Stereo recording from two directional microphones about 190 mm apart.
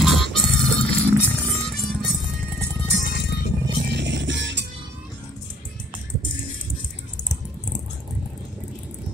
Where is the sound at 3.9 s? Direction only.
65° right (ahead or behind).